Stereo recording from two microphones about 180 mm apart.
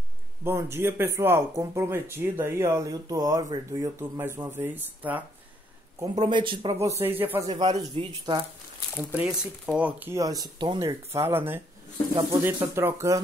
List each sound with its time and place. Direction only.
0.4 s speech: 15° right (ahead or behind)
5.9 s speech: 25° right (ahead or behind)
7.0 s speech: 10° right (ahead or behind)
7.5 s speech: 25° right (ahead or behind)
8.9 s speech: 5° right (ahead or behind)